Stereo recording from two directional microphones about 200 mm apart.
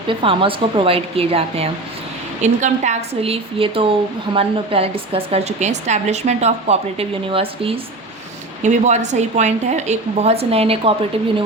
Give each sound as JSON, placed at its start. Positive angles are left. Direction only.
{"t": 0.1, "sound": "a woman's voice", "side_deg": -25}